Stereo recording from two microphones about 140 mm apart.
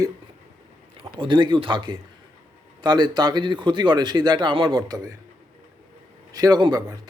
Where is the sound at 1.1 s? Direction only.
35° right (ahead or behind).